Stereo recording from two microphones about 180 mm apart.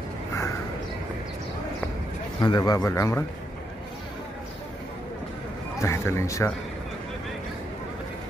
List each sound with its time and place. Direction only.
2.4 s speech: 25° left (ahead or behind)
5.8 s speech: 15° left (ahead or behind)